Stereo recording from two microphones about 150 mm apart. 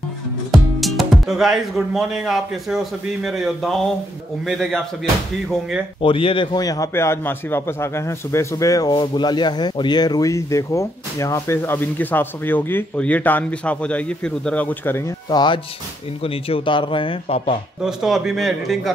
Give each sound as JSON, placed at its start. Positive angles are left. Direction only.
{"t": 0.5, "sound": "a man's voice", "side_deg": 0}
{"t": 6.0, "sound": "a man's voice", "side_deg": 35}
{"t": 15.2, "sound": "speech", "side_deg": 30}
{"t": 17.8, "sound": "a man's voice", "side_deg": 0}